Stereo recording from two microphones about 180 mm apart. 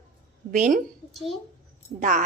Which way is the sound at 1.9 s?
45° right (ahead or behind).